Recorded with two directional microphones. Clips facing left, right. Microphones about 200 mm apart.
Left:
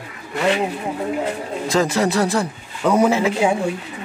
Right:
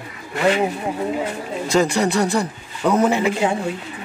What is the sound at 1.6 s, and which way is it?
A man's voice, centre (ahead or behind).